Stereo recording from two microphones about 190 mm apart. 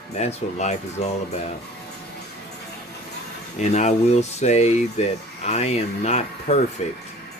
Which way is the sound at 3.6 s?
35° left (ahead or behind).